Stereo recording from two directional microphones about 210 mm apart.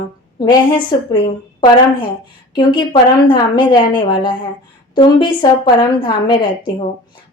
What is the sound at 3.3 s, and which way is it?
A woman's voice, 20° left (ahead or behind).